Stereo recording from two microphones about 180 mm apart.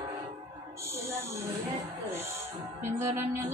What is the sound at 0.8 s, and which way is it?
Speech, 15° right (ahead or behind).